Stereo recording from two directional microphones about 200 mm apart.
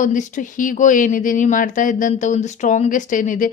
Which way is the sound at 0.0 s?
40° left (ahead or behind).